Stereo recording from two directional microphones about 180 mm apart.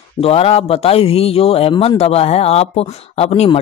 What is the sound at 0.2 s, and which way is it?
A man's voice, 35° left (ahead or behind).